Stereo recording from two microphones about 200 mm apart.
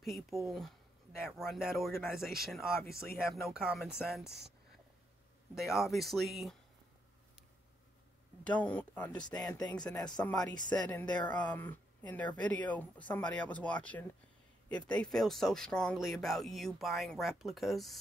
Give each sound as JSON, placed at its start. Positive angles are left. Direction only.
{"t": 0.0, "sound": "speech", "side_deg": 0}
{"t": 5.5, "sound": "speech", "side_deg": 0}
{"t": 8.5, "sound": "speech", "side_deg": 10}
{"t": 9.4, "sound": "speech", "side_deg": 20}
{"t": 9.8, "sound": "speech", "side_deg": 5}